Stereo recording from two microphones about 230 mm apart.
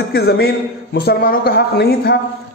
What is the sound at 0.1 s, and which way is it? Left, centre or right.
A man's voice, left.